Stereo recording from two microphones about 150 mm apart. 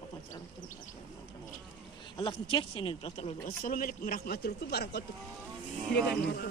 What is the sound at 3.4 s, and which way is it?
A man's voice, 65° left (ahead or behind).